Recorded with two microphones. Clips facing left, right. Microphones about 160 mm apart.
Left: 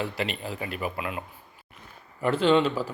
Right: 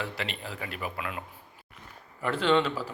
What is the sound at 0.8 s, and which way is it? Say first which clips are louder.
Speech: left 3 dB; 20° left (ahead or behind).